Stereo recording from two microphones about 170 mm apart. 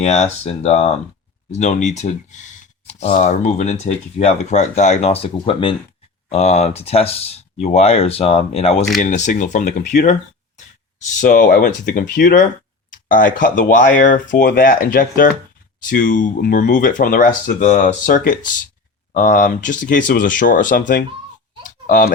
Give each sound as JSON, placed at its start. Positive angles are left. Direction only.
{"t": 0.0, "sound": "speech", "side_deg": 40}
{"t": 6.2, "sound": "speech", "side_deg": 40}
{"t": 9.0, "sound": "speech", "side_deg": 45}